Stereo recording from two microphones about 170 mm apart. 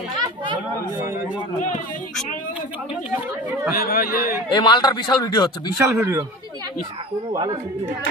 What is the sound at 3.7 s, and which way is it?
Speech, 60° left (ahead or behind).